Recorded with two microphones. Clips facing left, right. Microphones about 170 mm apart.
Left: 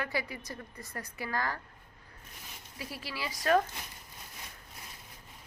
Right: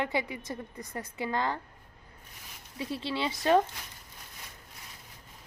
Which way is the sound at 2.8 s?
25° right (ahead or behind).